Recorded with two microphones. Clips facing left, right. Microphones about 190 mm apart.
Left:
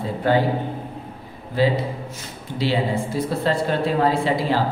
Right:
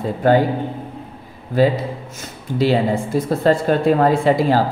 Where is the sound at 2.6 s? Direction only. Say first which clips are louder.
Right 5 dB; 45° right (ahead or behind).